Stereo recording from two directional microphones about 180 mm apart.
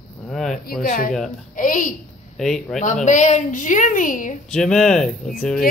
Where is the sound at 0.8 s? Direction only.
50° left (ahead or behind).